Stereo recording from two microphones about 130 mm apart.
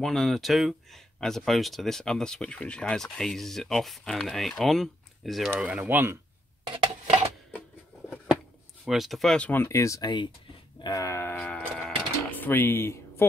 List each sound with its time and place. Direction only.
0.0 s speech: centre (ahead or behind)
5.6 s speech: 10° right (ahead or behind)
8.8 s speech: centre (ahead or behind); by 13.3 s 20° left (ahead or behind)